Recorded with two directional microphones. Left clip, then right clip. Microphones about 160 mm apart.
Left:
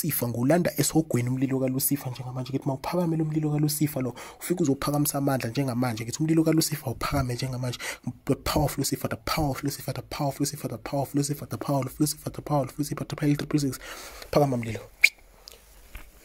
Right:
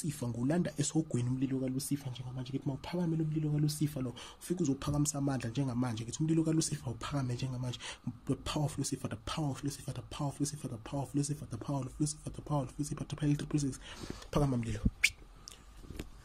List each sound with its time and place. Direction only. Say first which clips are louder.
0.4 s speech: left 12 dB; 30° left (ahead or behind); by 15.1 s 10° left (ahead or behind)